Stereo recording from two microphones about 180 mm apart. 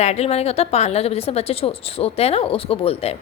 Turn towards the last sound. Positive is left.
turn(degrees=35)  # may be behind; listen again after turning